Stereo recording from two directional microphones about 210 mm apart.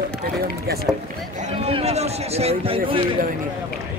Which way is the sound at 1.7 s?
30° right (ahead or behind).